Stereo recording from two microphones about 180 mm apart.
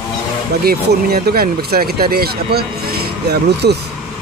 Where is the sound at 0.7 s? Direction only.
60° right (ahead or behind).